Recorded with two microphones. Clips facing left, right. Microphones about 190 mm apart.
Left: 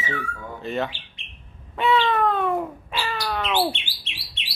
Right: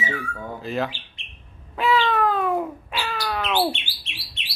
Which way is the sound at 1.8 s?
Centre (ahead or behind).